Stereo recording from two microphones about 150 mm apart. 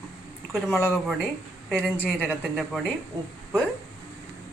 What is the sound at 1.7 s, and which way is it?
Speech, centre (ahead or behind).